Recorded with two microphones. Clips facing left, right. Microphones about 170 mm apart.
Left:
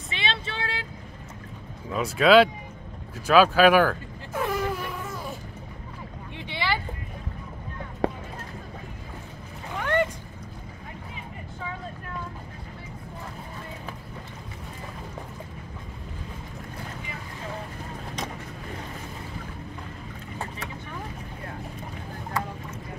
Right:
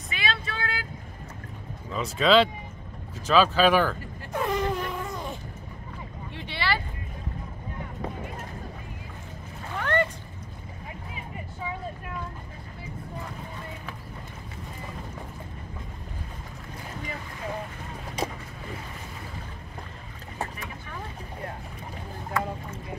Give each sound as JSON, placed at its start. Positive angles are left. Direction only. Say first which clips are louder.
{"t": 0.1, "sound": "vehicle", "louder": "even", "side_deg": 25}
{"t": 1.9, "sound": "speech", "louder": "left 3 dB", "side_deg": 10}
{"t": 3.3, "sound": "insect", "louder": "left 3 dB", "side_deg": 10}
{"t": 6.3, "sound": "boat", "louder": "even", "side_deg": 15}
{"t": 8.0, "sound": "a sound", "louder": "left 10 dB", "side_deg": 75}
{"t": 9.8, "sound": "a sound", "louder": "left 1 dB", "side_deg": 15}